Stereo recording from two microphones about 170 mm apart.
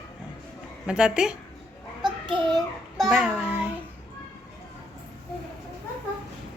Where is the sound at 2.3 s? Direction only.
25° right (ahead or behind).